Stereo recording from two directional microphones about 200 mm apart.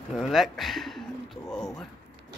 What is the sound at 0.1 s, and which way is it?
Speech, centre (ahead or behind).